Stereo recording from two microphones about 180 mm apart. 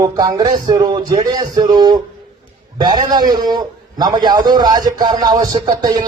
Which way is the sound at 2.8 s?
25° right (ahead or behind).